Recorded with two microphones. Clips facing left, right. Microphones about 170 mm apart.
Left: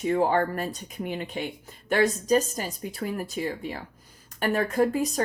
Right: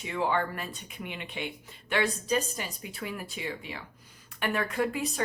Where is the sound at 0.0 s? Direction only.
40° left (ahead or behind).